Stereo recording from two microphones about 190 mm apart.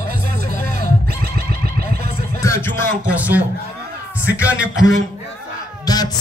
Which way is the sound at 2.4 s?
15° left (ahead or behind).